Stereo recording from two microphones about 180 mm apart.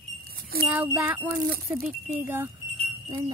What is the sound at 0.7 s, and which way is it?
Speech, 10° right (ahead or behind).